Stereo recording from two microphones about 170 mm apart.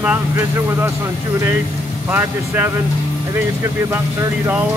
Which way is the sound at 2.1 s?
10° right (ahead or behind).